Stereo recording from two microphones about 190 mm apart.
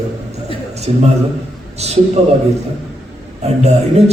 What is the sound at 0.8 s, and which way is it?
A man's voice, 35° right (ahead or behind).